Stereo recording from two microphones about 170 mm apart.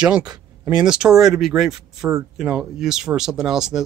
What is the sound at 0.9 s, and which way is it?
Speech, 5° right (ahead or behind).